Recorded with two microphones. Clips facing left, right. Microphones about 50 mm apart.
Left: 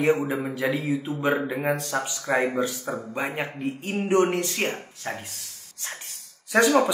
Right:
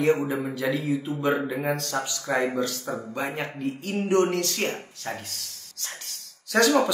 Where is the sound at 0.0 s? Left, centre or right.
Centre.